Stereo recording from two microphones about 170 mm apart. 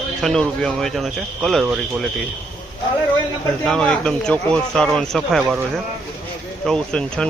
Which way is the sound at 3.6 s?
5° left (ahead or behind).